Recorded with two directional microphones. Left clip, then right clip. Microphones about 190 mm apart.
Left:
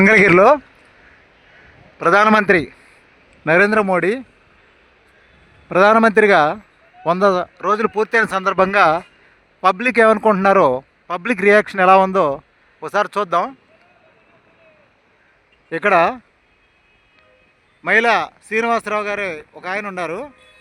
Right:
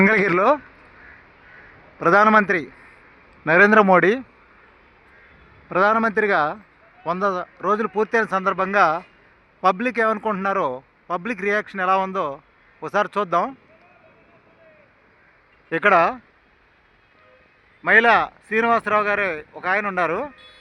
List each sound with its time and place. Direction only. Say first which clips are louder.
0.0 s speech: left 7 dB; 25° left (ahead or behind)
2.0 s a man's voice: left 2 dB; 30° left (ahead or behind)
3.4 s speech: even; 15° left (ahead or behind)
5.6 s a man's voice: left 6 dB; 25° left (ahead or behind)
15.7 s speech: left 2 dB; 15° left (ahead or behind)
17.8 s speech: even; 15° left (ahead or behind)